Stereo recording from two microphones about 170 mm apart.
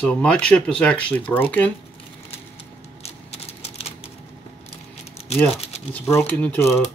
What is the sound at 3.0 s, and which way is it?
Typing, 40° left (ahead or behind).